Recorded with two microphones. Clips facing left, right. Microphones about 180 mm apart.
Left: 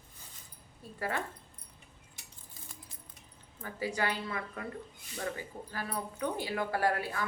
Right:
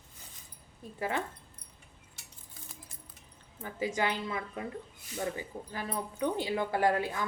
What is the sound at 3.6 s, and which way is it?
Speech, 20° right (ahead or behind).